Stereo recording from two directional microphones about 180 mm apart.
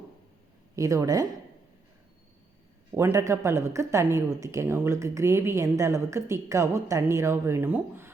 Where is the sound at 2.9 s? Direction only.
15° right (ahead or behind).